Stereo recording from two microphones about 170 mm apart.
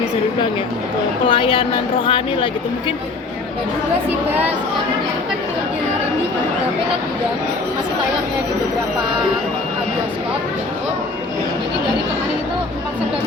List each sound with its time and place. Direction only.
1.3 s a woman's voice: 30° left (ahead or behind)